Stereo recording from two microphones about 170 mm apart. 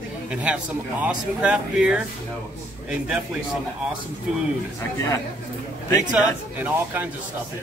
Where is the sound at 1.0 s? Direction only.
5° right (ahead or behind).